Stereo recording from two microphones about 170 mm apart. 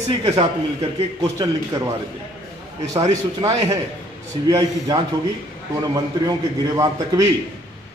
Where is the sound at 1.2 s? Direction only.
20° right (ahead or behind).